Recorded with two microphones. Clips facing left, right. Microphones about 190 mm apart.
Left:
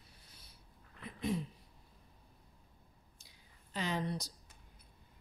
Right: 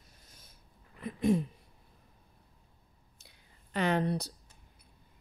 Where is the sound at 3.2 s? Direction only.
60° right (ahead or behind).